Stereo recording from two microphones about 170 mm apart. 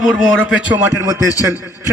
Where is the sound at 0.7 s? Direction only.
15° right (ahead or behind).